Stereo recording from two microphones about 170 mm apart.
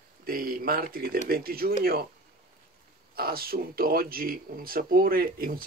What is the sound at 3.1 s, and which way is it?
Speech, 65° right (ahead or behind).